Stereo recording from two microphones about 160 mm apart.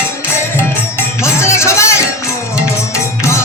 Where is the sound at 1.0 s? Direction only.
15° left (ahead or behind).